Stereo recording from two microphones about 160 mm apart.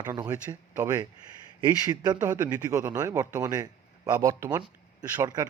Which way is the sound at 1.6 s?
25° right (ahead or behind).